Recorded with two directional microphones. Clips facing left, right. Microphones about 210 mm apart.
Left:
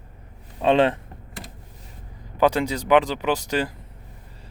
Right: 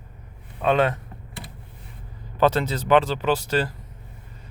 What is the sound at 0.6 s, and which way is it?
Speech, 30° left (ahead or behind).